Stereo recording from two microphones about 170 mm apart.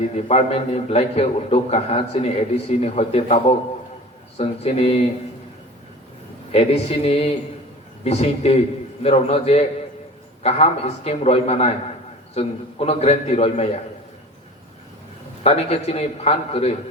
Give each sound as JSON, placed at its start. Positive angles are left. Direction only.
{"t": 0.0, "sound": "a man's voice", "side_deg": 40}
{"t": 6.5, "sound": "a man's voice", "side_deg": 35}
{"t": 15.4, "sound": "a man's voice", "side_deg": 35}